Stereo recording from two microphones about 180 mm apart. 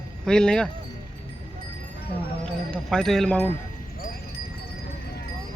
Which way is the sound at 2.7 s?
5° left (ahead or behind).